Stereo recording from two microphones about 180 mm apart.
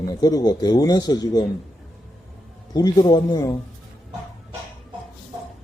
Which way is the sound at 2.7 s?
20° left (ahead or behind).